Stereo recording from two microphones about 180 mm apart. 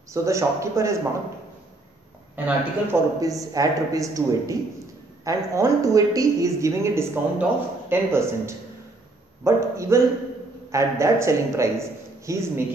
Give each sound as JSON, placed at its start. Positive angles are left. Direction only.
{"t": 0.1, "sound": "speech", "side_deg": -15}
{"t": 2.3, "sound": "speech", "side_deg": -10}